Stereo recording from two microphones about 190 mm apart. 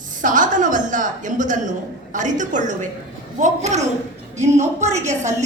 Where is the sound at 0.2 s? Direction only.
45° right (ahead or behind).